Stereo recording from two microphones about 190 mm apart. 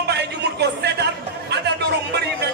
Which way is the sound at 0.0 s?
60° right (ahead or behind).